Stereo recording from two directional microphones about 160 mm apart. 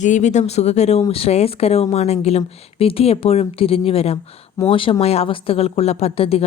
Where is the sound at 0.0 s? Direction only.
50° left (ahead or behind).